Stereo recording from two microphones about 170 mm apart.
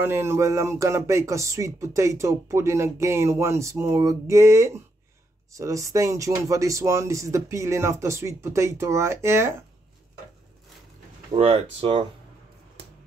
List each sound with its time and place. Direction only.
0.0 s speech: 15° right (ahead or behind)
11.3 s speech: 35° right (ahead or behind)